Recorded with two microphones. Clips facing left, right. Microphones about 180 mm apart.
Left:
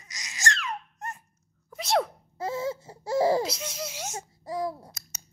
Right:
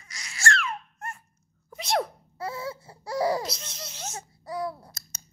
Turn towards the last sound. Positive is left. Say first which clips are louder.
# left 1 dB
turn(degrees=15)  # may be behind; listen again after turning